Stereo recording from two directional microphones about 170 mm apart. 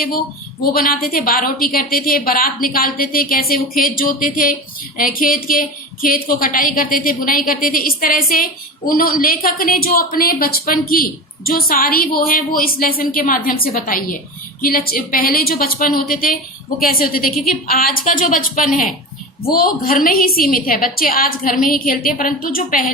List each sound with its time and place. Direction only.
0.6 s a woman's voice: 60° left (ahead or behind)